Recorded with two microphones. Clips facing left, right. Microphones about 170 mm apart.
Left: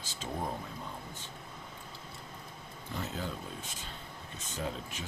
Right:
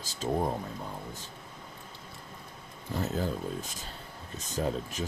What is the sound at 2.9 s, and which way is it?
Speech, 40° right (ahead or behind).